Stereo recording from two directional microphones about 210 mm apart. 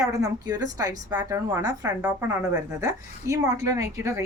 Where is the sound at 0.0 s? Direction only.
15° right (ahead or behind).